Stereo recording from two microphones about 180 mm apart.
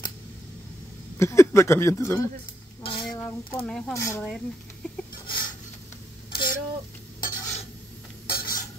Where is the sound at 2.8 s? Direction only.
30° left (ahead or behind).